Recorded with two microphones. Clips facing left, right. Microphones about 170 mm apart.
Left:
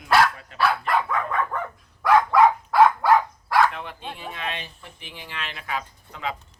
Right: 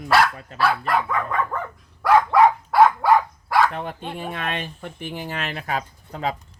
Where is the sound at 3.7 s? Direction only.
45° right (ahead or behind).